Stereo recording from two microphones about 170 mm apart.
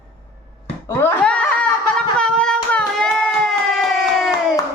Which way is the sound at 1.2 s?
5° left (ahead or behind).